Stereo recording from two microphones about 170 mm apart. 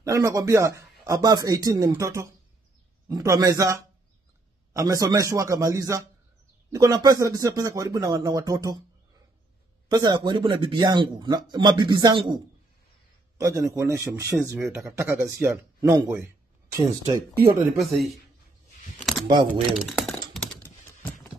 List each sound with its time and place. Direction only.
0.0 s a man's voice: 20° right (ahead or behind)
9.8 s a man's voice: 25° right (ahead or behind)
13.4 s a man's voice: 20° right (ahead or behind)
17.7 s speech: centre (ahead or behind)
19.1 s a sound: centre (ahead or behind)
19.8 s typing: centre (ahead or behind)
20.6 s typing: 10° left (ahead or behind)